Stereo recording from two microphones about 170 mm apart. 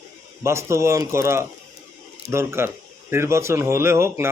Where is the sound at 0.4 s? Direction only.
15° right (ahead or behind).